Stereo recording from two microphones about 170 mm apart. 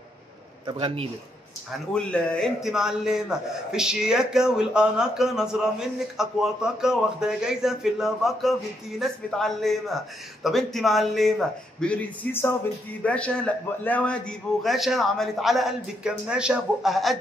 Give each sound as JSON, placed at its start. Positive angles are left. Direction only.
{"t": 0.7, "sound": "a man's voice", "side_deg": -30}
{"t": 2.0, "sound": "a man's voice", "side_deg": 5}